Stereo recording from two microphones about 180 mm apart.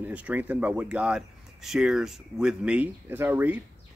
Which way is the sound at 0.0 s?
10° right (ahead or behind).